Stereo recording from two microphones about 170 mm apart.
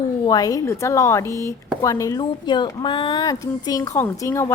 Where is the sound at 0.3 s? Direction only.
20° left (ahead or behind).